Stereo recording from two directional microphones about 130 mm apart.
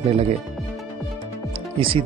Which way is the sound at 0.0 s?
55° right (ahead or behind).